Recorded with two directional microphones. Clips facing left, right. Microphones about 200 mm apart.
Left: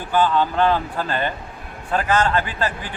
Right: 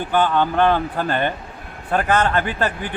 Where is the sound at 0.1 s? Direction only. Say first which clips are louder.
Even; 55° right (ahead or behind).